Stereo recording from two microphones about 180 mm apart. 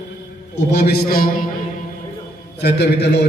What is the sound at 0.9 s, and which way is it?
Speech, 55° left (ahead or behind).